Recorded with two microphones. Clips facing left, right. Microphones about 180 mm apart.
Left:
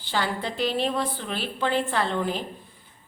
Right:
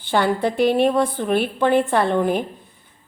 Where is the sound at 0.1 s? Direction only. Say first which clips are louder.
Right 9 dB; 55° right (ahead or behind).